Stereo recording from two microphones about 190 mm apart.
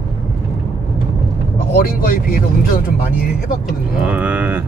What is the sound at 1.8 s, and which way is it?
Speech, 50° left (ahead or behind).